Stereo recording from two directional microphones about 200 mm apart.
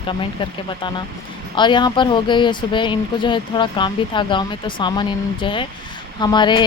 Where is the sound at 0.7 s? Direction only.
25° left (ahead or behind).